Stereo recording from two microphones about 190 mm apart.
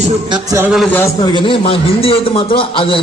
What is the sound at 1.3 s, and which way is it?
A man's voice, 25° left (ahead or behind).